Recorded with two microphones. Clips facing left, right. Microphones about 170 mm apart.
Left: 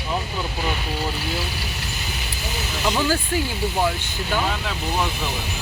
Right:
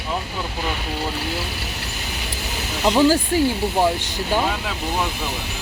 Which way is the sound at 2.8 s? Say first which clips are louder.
Right 6 dB; 30° right (ahead or behind).